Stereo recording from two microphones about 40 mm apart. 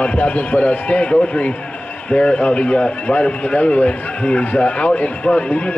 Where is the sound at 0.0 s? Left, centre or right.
Left.